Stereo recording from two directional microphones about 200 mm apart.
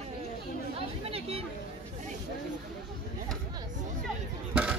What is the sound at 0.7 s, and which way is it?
Speech, 30° right (ahead or behind).